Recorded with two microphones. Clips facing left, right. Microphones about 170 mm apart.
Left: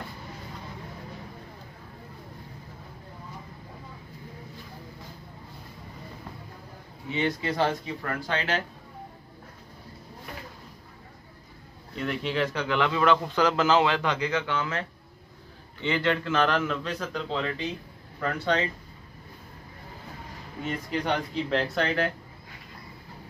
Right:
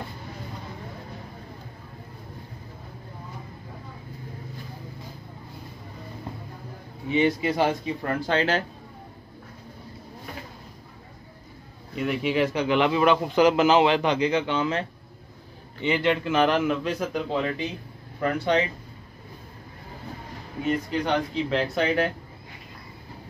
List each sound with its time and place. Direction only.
7.1 s a man's voice: 10° right (ahead or behind)
8.3 s speech: 35° right (ahead or behind)
11.9 s a man's voice: 10° right (ahead or behind)
20.6 s speech: centre (ahead or behind)